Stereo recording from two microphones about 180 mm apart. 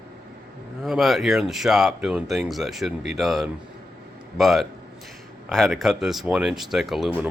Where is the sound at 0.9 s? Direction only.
Centre (ahead or behind).